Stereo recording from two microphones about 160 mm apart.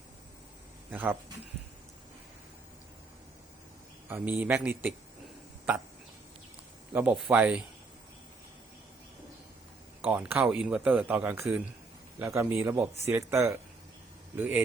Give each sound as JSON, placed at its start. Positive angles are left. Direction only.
{"t": 0.9, "sound": "speech", "side_deg": -10}
{"t": 4.1, "sound": "speech", "side_deg": -10}
{"t": 6.9, "sound": "speech", "side_deg": -10}
{"t": 10.0, "sound": "speech", "side_deg": -10}